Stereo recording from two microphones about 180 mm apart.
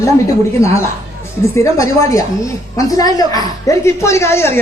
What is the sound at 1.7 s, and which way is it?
A man's voice, 20° left (ahead or behind).